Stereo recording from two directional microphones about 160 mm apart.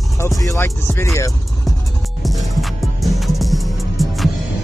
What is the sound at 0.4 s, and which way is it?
Speech, 20° left (ahead or behind).